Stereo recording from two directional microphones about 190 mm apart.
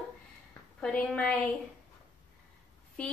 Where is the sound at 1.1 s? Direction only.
5° left (ahead or behind).